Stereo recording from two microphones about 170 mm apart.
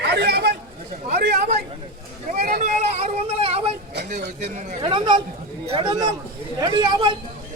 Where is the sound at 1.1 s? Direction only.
70° right (ahead or behind).